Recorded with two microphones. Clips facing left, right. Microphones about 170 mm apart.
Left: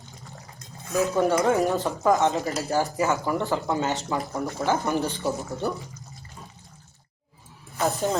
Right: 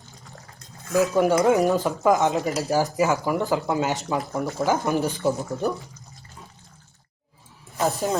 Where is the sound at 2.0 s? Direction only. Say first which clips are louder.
Even; 15° right (ahead or behind).